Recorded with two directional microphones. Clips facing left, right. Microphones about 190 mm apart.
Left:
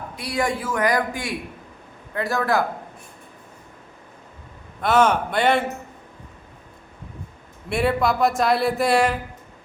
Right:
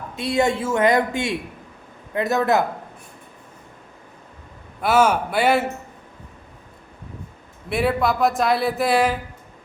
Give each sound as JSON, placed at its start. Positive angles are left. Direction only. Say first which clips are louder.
{"t": 0.2, "sound": "a man's voice", "louder": "right 5 dB", "side_deg": -25}
{"t": 4.8, "sound": "speech", "louder": "right 1 dB", "side_deg": -10}
{"t": 7.7, "sound": "speech", "louder": "even", "side_deg": 0}